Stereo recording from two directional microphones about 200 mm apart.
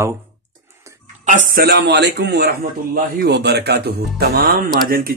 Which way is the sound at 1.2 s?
40° right (ahead or behind).